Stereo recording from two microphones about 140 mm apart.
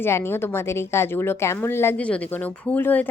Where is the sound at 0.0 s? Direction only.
20° left (ahead or behind).